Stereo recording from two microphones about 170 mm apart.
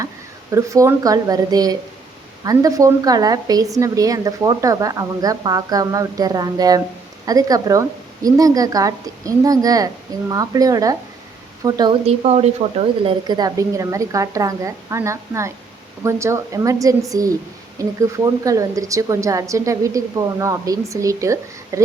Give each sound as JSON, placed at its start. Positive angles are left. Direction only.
{"t": 0.5, "sound": "a woman's voice", "side_deg": -20}
{"t": 12.0, "sound": "a woman's voice", "side_deg": -40}